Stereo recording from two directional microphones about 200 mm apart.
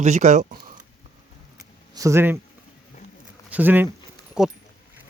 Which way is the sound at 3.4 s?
10° right (ahead or behind).